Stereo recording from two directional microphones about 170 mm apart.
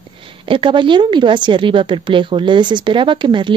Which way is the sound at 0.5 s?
30° right (ahead or behind).